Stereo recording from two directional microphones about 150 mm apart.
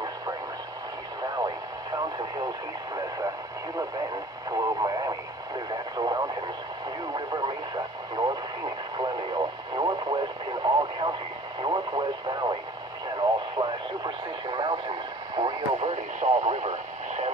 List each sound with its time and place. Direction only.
4.5 s radio: 25° right (ahead or behind)
15.9 s radio: 50° right (ahead or behind)